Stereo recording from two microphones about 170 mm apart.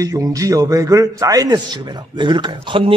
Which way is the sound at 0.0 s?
20° right (ahead or behind).